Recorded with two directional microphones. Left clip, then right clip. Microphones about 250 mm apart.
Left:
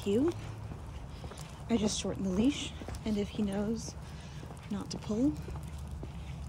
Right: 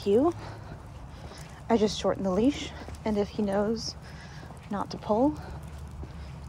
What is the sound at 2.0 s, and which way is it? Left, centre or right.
Speech, right.